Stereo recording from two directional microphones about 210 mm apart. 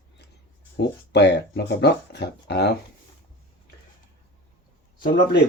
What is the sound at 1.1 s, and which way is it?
Speech, 50° left (ahead or behind).